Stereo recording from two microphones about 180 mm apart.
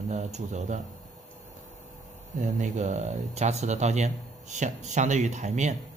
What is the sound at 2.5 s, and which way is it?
Speech, 40° right (ahead or behind).